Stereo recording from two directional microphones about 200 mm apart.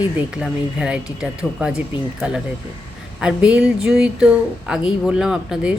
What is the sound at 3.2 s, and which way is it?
A woman's voice, 5° right (ahead or behind).